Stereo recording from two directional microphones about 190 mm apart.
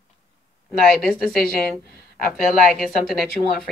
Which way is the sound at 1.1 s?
Centre (ahead or behind).